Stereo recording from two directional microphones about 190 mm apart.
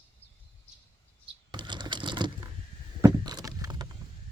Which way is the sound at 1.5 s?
25° right (ahead or behind).